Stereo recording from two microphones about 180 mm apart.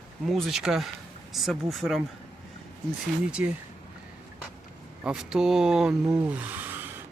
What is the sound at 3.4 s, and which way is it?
Speech, 10° right (ahead or behind).